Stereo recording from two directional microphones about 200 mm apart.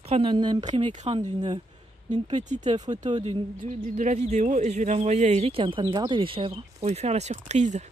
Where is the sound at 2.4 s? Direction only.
35° right (ahead or behind).